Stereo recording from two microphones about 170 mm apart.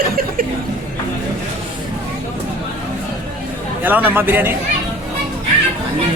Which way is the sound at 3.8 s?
10° right (ahead or behind).